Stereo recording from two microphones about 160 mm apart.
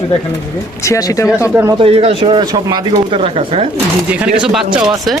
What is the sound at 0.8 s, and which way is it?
Speech, 20° left (ahead or behind).